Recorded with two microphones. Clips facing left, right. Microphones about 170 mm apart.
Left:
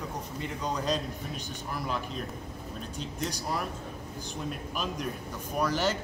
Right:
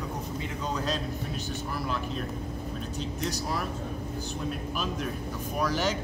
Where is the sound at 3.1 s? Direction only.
10° right (ahead or behind).